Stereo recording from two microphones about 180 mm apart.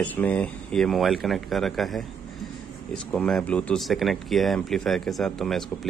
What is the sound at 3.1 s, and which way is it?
Speech, 5° left (ahead or behind).